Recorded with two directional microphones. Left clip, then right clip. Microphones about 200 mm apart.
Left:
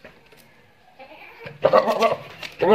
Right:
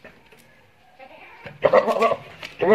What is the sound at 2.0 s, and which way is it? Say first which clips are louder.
Goat: even; 20° left (ahead or behind).